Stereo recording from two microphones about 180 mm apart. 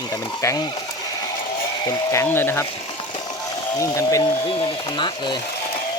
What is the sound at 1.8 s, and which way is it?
Speech, 15° left (ahead or behind).